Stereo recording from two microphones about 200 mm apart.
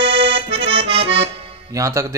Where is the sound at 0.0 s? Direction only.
60° right (ahead or behind).